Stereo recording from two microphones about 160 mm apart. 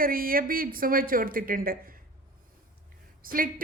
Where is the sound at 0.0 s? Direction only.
65° right (ahead or behind).